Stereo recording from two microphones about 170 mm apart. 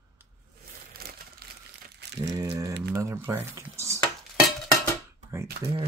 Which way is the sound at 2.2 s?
20° right (ahead or behind).